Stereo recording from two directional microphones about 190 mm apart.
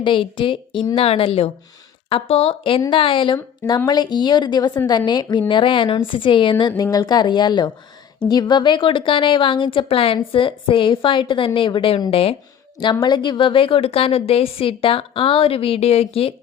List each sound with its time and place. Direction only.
0.0 s a woman's voice: 25° left (ahead or behind)
3.3 s a woman's voice: 15° left (ahead or behind); by 16.3 s 30° left (ahead or behind)